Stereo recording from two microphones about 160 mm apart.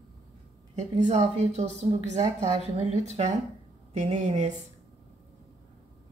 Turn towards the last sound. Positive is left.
turn(degrees=-45)  # may be behind; listen again after turning